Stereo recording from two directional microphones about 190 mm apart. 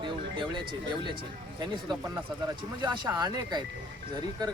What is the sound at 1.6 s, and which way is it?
Speech, 25° right (ahead or behind).